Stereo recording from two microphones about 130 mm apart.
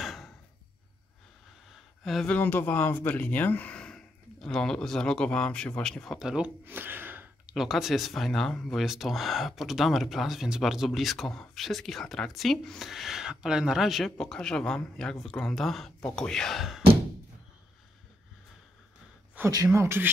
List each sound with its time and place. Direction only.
0.0 s a sound: centre (ahead or behind)
1.7 s speech: centre (ahead or behind); by 7.5 s 15° right (ahead or behind)
7.5 s speech: centre (ahead or behind)
19.5 s speech: 25° right (ahead or behind)